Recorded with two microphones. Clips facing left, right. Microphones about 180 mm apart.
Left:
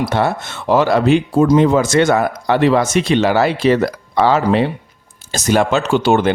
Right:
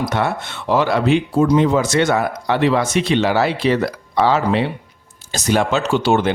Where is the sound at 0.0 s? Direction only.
30° left (ahead or behind).